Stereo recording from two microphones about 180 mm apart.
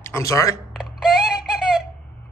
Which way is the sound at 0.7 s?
Centre (ahead or behind).